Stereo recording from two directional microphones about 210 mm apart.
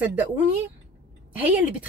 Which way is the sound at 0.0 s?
10° right (ahead or behind).